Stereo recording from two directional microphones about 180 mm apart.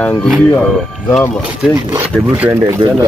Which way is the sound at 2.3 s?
10° right (ahead or behind).